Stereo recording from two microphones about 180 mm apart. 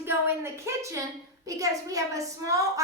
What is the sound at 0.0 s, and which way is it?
A woman's voice, 15° right (ahead or behind).